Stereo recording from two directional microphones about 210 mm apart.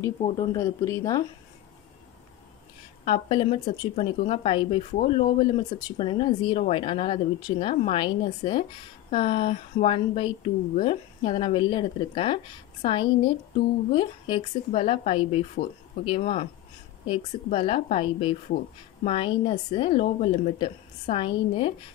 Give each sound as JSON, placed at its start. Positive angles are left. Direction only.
{"t": 0.2, "sound": "a woman's voice", "side_deg": 25}
{"t": 0.6, "sound": "speech", "side_deg": 15}
{"t": 3.1, "sound": "a woman's voice", "side_deg": 25}